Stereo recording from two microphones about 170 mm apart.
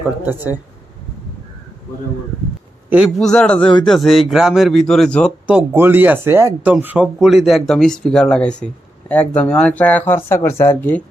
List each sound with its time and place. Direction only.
0.3 s speech: 10° right (ahead or behind)
2.9 s speech: centre (ahead or behind)
3.6 s speech: 30° left (ahead or behind)
3.8 s speech: centre (ahead or behind)
5.5 s speech: 10° right (ahead or behind); by 11.0 s 10° left (ahead or behind)